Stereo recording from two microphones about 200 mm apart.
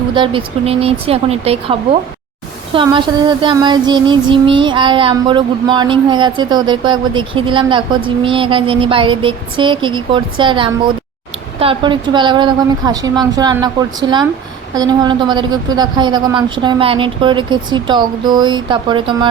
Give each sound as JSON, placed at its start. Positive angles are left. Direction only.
{"t": 0.1, "sound": "child singing", "side_deg": -25}